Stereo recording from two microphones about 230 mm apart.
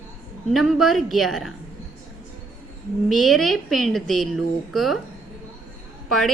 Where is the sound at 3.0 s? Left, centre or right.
Centre.